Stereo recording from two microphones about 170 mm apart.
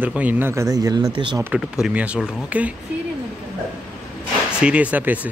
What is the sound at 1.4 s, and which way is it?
Speech, 5° right (ahead or behind).